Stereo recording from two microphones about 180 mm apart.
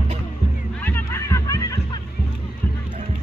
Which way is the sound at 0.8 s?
15° left (ahead or behind).